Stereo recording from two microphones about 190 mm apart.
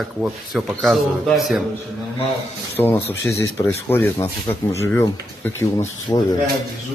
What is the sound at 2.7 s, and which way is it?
A man's voice, 10° left (ahead or behind).